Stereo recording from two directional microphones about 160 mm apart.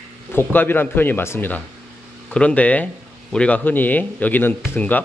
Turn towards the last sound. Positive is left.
turn(degrees=10)  # may be behind; listen again after turning